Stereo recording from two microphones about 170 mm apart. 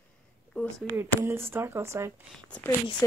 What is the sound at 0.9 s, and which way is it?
Speech, 15° right (ahead or behind).